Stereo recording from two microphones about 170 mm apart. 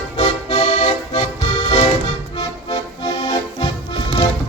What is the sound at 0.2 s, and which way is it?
Accordion, 30° left (ahead or behind).